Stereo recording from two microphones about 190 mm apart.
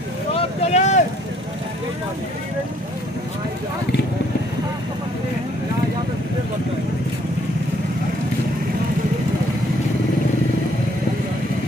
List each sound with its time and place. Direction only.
0.3 s vehicle: 35° left (ahead or behind)